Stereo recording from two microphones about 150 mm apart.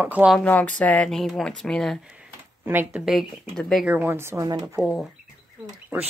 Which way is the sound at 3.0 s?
Centre (ahead or behind).